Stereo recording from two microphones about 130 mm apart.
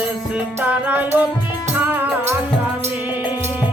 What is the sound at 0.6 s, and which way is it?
Music, 15° right (ahead or behind).